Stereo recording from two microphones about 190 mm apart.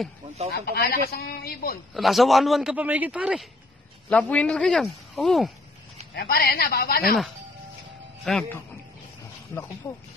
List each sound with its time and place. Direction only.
0.5 s speech: 55° left (ahead or behind)
2.0 s a man's voice: centre (ahead or behind)
4.1 s a man's voice: 5° left (ahead or behind)
6.1 s speech: 55° left (ahead or behind)
8.3 s a man's voice: centre (ahead or behind)
9.5 s speech: 15° left (ahead or behind)